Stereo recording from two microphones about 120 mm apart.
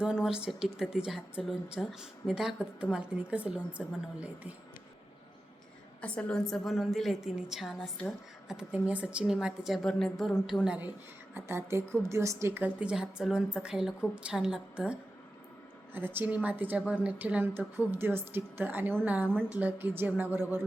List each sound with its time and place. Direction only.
0.0 s a woman's voice: 5° right (ahead or behind)
6.0 s a woman's voice: 10° left (ahead or behind)
7.8 s speech: 10° left (ahead or behind)
8.4 s a woman's voice: 10° right (ahead or behind)
11.3 s a woman's voice: 20° right (ahead or behind)
16.0 s a woman's voice: 15° right (ahead or behind)